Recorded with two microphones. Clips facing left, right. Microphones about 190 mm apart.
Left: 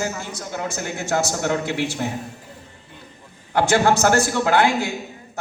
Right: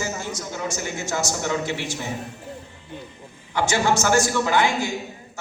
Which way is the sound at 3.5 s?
60° left (ahead or behind).